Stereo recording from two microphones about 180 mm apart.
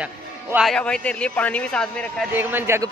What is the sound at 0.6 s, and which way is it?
A man's voice, 5° left (ahead or behind).